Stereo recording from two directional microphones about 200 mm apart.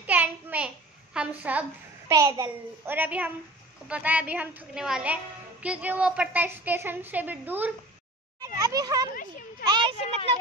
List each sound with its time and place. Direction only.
0.0 s child singing: 10° right (ahead or behind)
1.1 s a child's voice: 5° right (ahead or behind)
8.4 s a child's voice: 20° right (ahead or behind)
9.1 s a sound: 45° left (ahead or behind)
9.7 s a child's voice: 25° right (ahead or behind)